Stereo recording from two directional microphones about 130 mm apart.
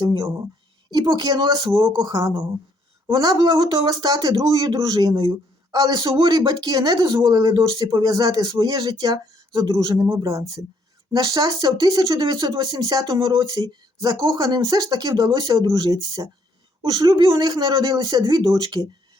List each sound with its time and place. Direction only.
0.0 s speech: 35° right (ahead or behind)